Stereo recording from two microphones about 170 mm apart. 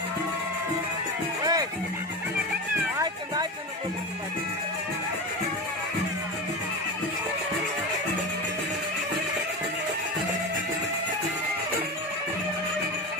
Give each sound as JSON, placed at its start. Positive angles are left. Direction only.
{"t": 1.4, "sound": "music", "side_deg": -20}